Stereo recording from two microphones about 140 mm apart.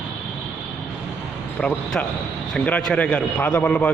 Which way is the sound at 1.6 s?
5° left (ahead or behind).